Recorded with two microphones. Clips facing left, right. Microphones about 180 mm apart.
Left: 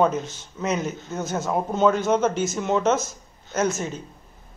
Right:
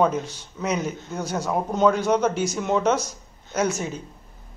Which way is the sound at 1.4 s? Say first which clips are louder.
Even; 5° left (ahead or behind).